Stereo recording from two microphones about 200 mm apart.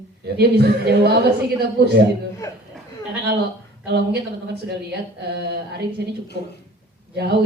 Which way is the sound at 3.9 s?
55° right (ahead or behind).